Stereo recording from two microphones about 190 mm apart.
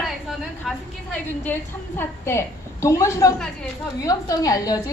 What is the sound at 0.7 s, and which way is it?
A woman's voice, centre (ahead or behind).